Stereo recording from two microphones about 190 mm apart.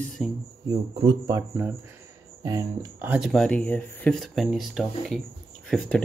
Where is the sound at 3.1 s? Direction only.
5° right (ahead or behind).